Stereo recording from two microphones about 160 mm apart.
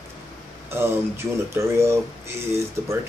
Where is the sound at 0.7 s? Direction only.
15° right (ahead or behind).